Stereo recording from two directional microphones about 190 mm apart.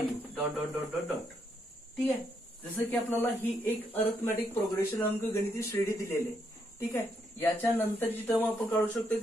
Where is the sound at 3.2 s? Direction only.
10° left (ahead or behind).